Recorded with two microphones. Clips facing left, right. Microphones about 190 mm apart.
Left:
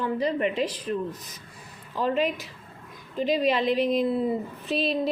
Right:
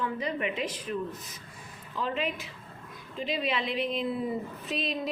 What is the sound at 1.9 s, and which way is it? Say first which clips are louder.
A woman's voice: left 6 dB; 40° left (ahead or behind).